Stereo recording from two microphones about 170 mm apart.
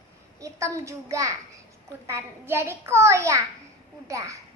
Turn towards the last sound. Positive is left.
turn(degrees=-20)  # may be behind; listen again after turning